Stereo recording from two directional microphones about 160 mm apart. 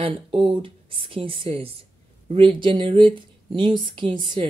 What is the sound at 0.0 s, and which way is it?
Speech, 35° right (ahead or behind).